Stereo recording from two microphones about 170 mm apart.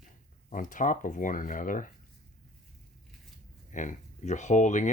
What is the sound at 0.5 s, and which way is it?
Speech, 50° left (ahead or behind).